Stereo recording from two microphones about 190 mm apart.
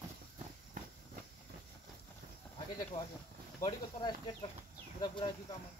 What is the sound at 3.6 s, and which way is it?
Speech, 25° left (ahead or behind).